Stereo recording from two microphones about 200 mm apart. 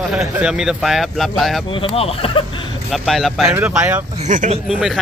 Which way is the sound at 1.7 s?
30° left (ahead or behind).